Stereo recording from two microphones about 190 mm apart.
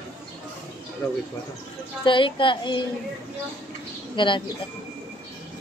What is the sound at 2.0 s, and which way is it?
Speech, 25° left (ahead or behind).